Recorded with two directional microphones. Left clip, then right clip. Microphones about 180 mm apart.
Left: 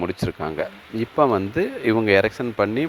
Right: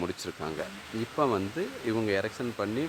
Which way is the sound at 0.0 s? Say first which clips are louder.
Left 9 dB; 30° left (ahead or behind).